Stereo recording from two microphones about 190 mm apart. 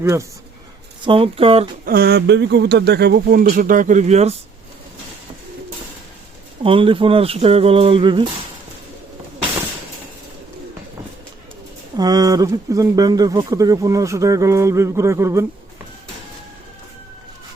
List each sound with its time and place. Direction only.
0.0 s speech: 15° right (ahead or behind)
1.0 s speech: 30° right (ahead or behind)
1.8 s speech: 50° right (ahead or behind); by 4.4 s 35° right (ahead or behind)
6.6 s speech: 30° right (ahead or behind)
11.9 s speech: 20° right (ahead or behind)